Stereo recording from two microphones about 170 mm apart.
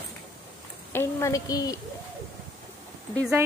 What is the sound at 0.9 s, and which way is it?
Speech, 20° left (ahead or behind).